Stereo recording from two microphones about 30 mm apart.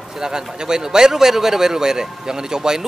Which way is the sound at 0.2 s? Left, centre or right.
Right.